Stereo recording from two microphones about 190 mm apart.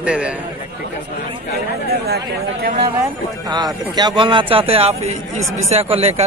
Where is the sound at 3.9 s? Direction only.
25° right (ahead or behind).